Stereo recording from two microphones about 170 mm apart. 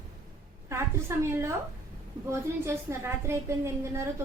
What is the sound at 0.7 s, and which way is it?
A woman's voice, 15° right (ahead or behind).